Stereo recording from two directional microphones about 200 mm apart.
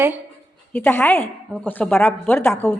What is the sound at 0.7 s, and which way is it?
A woman's voice, 10° left (ahead or behind).